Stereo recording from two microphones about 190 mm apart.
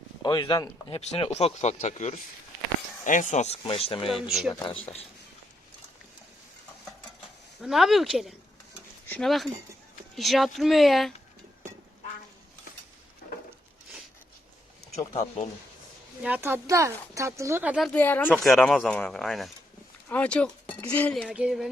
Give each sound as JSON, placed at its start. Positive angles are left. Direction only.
{"t": 0.2, "sound": "speech", "side_deg": 20}
{"t": 4.1, "sound": "speech", "side_deg": 0}
{"t": 4.6, "sound": "speech", "side_deg": 30}
{"t": 7.6, "sound": "speech", "side_deg": 0}
{"t": 16.2, "sound": "speech", "side_deg": -10}